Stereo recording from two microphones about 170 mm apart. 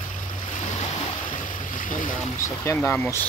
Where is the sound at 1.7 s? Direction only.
50° left (ahead or behind).